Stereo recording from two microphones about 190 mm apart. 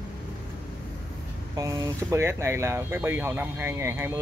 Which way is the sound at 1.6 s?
15° right (ahead or behind).